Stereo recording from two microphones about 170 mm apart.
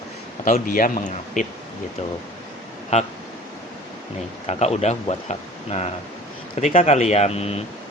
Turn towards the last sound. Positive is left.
turn(degrees=35)  # may be behind; listen again after turning